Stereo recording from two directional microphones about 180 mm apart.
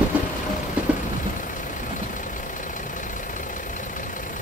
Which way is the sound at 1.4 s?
45° left (ahead or behind).